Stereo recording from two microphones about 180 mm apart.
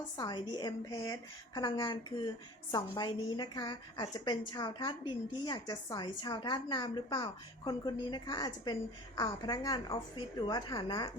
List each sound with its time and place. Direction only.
0.2 s a woman's voice: 25° left (ahead or behind)